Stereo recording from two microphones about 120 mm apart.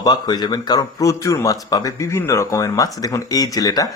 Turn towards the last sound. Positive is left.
turn(degrees=30)  # may be behind; listen again after turning